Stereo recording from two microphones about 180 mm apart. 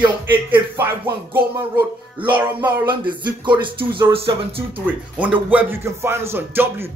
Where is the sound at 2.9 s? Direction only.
25° right (ahead or behind).